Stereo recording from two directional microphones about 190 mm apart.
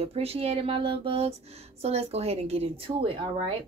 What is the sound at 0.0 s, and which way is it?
Speech, 30° right (ahead or behind).